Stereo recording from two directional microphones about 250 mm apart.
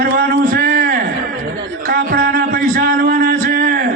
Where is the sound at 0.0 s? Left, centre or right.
Right.